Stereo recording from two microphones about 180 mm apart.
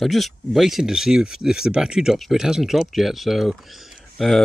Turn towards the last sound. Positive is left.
turn(degrees=0)  # may be behind; listen again after turning